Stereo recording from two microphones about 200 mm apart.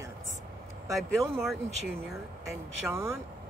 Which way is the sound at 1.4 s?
Centre (ahead or behind).